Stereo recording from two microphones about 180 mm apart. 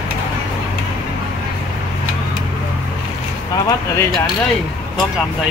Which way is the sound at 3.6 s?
20° left (ahead or behind).